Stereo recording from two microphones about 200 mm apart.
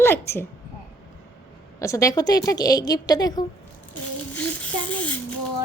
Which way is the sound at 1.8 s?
15° left (ahead or behind).